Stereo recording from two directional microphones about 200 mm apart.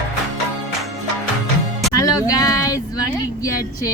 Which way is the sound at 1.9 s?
15° left (ahead or behind).